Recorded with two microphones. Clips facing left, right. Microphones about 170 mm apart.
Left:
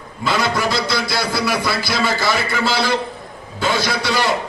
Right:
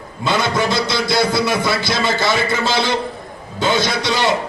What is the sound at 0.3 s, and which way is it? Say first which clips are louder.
A man's voice: right 1 dB; 25° right (ahead or behind).